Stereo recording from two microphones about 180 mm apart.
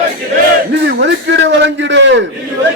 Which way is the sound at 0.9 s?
75° right (ahead or behind).